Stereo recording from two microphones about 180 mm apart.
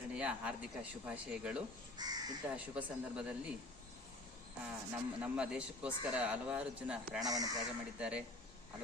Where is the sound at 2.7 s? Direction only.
5° right (ahead or behind).